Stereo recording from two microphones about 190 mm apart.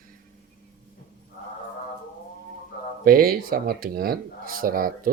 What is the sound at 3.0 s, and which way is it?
Speech, 50° right (ahead or behind).